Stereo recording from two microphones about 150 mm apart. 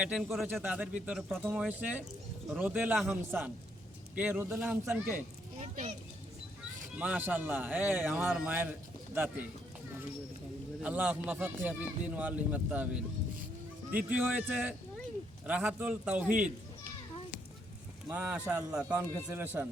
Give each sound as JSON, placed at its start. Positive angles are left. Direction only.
{"t": 0.0, "sound": "speech", "side_deg": -5}
{"t": 5.5, "sound": "a child's voice", "side_deg": -50}
{"t": 7.0, "sound": "speech", "side_deg": -10}
{"t": 10.8, "sound": "speech", "side_deg": -10}
{"t": 14.1, "sound": "speech", "side_deg": -10}
{"t": 18.1, "sound": "speech", "side_deg": -10}